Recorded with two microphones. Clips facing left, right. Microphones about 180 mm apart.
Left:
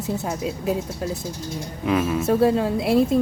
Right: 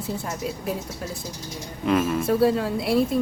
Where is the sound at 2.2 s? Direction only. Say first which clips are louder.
Left 4 dB; 20° left (ahead or behind).